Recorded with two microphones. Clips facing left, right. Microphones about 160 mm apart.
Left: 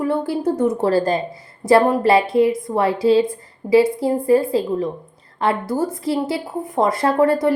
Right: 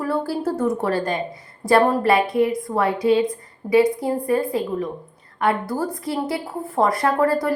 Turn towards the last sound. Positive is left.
turn(degrees=25)  # may be behind; listen again after turning